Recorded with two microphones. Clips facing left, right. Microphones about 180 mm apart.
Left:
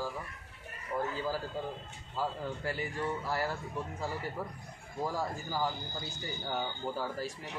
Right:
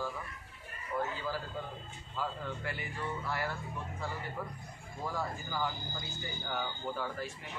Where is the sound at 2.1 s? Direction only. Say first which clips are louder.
Left 3 dB; 35° left (ahead or behind).